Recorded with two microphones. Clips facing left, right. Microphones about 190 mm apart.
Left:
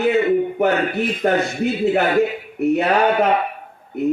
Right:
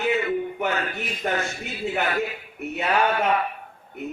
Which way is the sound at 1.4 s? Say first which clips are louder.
Left 10 dB; 35° left (ahead or behind).